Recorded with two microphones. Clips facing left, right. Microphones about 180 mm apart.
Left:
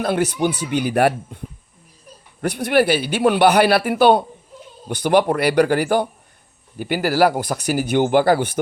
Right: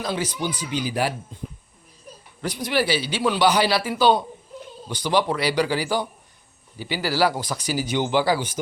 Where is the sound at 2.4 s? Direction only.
60° left (ahead or behind).